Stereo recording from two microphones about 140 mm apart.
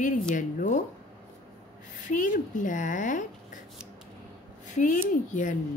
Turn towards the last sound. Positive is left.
turn(degrees=65)  # may be behind; listen again after turning